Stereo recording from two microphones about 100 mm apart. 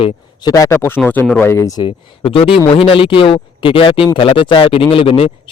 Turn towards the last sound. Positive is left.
turn(degrees=70)  # may be behind; listen again after turning